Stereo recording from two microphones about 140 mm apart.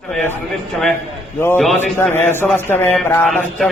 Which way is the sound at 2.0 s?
15° left (ahead or behind).